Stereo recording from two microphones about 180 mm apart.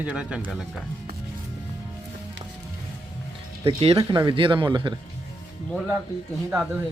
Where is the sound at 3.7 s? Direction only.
30° right (ahead or behind).